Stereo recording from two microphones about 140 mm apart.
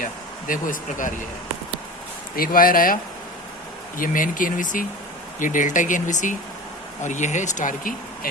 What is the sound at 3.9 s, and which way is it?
Speech, 75° left (ahead or behind).